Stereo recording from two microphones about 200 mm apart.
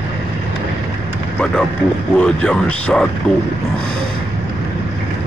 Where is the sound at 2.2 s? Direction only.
5° left (ahead or behind).